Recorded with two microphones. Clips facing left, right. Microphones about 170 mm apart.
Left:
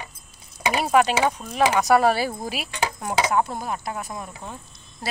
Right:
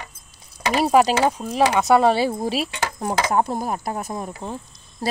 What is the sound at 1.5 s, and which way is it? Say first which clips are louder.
Speech: right 1 dB; 25° right (ahead or behind).